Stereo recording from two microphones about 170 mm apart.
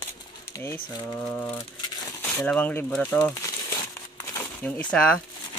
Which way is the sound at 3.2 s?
20° left (ahead or behind).